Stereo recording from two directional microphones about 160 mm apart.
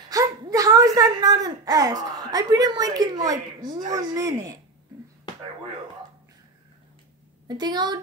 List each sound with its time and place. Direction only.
0.1 s a woman's voice: 20° right (ahead or behind)
7.4 s speech: 25° right (ahead or behind)